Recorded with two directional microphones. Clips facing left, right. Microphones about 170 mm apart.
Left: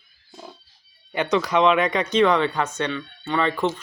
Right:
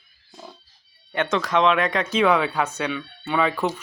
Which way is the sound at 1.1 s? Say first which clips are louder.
Left 1 dB; centre (ahead or behind).